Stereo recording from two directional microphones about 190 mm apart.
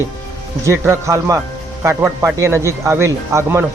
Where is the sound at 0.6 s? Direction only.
15° right (ahead or behind).